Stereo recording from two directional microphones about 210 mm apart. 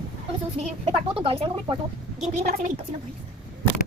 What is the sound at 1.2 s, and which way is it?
A woman's voice, 25° right (ahead or behind).